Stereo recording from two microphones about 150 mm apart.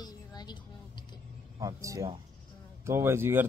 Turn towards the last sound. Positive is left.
turn(degrees=-15)  # may be behind; listen again after turning